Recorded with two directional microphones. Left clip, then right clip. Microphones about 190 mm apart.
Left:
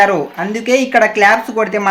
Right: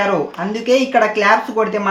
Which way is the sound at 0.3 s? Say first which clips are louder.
Left 1 dB; 20° left (ahead or behind).